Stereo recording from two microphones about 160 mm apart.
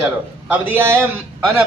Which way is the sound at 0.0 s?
5° right (ahead or behind).